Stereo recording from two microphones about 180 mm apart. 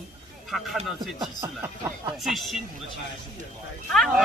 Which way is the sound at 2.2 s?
Centre (ahead or behind).